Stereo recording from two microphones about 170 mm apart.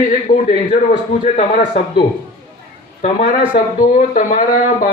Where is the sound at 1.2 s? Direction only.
45° left (ahead or behind).